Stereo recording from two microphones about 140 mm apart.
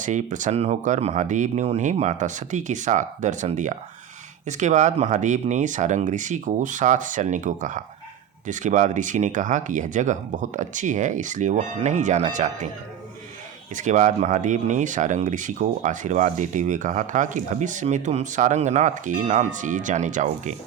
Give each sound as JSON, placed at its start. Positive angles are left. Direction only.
{"t": 0.0, "sound": "speech", "side_deg": -60}
{"t": 13.7, "sound": "speech", "side_deg": -60}